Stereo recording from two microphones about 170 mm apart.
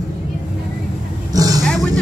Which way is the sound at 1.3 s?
20° right (ahead or behind).